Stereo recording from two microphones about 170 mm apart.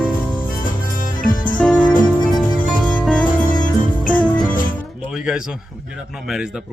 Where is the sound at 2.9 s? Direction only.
Centre (ahead or behind).